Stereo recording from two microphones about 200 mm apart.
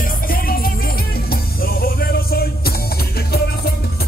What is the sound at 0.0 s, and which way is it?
Music, 45° left (ahead or behind).